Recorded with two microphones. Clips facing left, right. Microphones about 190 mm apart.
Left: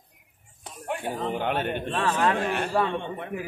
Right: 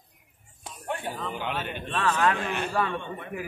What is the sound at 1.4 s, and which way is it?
Speech, 55° left (ahead or behind).